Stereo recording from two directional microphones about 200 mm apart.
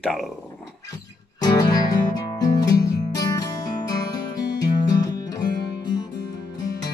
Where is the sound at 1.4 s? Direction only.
20° left (ahead or behind).